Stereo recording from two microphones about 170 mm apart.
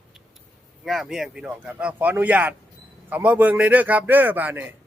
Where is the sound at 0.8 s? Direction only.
Centre (ahead or behind).